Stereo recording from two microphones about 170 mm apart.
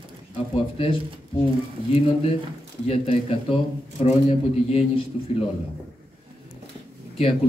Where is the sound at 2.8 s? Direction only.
35° left (ahead or behind).